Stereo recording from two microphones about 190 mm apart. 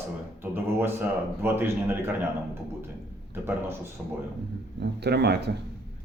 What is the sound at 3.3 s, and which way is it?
Speech, 10° right (ahead or behind).